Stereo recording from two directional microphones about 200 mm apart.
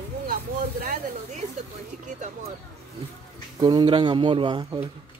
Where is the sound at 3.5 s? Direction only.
20° right (ahead or behind).